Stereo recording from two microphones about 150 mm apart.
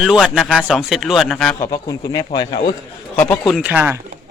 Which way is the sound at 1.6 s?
25° left (ahead or behind).